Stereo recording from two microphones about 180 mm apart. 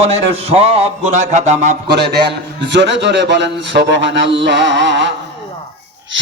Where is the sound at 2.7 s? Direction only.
75° right (ahead or behind).